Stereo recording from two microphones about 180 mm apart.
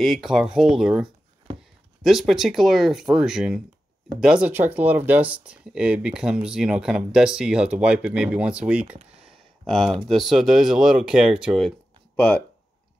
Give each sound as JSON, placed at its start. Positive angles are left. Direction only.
{"t": 0.0, "sound": "speech", "side_deg": 0}
{"t": 2.0, "sound": "speech", "side_deg": 0}